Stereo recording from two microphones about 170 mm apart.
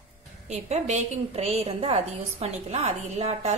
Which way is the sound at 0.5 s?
40° right (ahead or behind).